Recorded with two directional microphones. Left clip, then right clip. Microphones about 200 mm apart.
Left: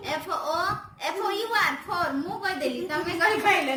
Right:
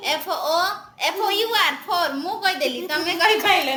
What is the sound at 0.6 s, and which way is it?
A woman's voice, 20° left (ahead or behind).